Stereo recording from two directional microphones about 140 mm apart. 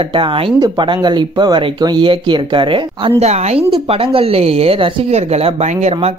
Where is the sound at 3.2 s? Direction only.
50° right (ahead or behind).